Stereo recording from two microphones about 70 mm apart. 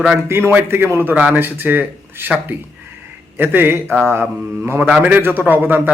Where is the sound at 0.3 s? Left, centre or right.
Right.